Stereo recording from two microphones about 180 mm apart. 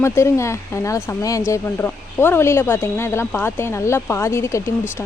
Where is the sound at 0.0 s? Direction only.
15° left (ahead or behind).